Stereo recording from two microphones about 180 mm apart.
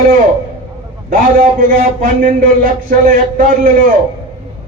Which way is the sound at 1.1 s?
50° right (ahead or behind).